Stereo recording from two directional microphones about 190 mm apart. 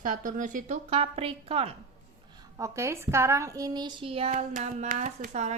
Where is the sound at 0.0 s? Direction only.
45° right (ahead or behind).